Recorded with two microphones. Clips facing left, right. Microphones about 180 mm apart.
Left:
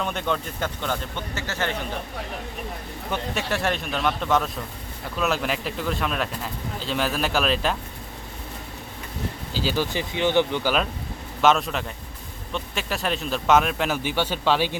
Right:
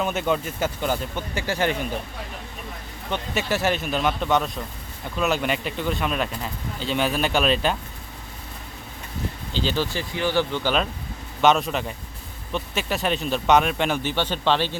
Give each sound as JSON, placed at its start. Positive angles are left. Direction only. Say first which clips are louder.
{"t": 0.0, "sound": "speech", "louder": "right 3 dB", "side_deg": -5}
{"t": 3.1, "sound": "speech", "louder": "right 2 dB", "side_deg": 0}
{"t": 9.5, "sound": "speech", "louder": "even", "side_deg": 5}
{"t": 9.9, "sound": "speech", "louder": "left 2 dB", "side_deg": 20}
{"t": 11.3, "sound": "speech", "louder": "right 1 dB", "side_deg": 0}